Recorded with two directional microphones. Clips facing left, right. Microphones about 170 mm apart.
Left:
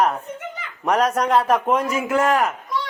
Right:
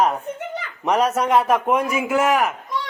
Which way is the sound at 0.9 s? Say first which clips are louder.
Even; 10° right (ahead or behind).